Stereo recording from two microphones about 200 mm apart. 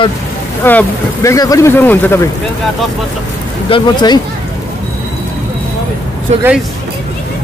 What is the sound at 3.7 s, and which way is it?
Speech, 20° left (ahead or behind).